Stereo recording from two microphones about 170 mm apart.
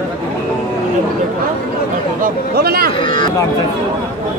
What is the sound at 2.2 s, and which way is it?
Speech, 65° right (ahead or behind).